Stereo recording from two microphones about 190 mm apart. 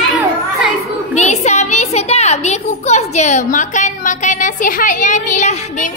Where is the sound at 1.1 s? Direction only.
35° left (ahead or behind).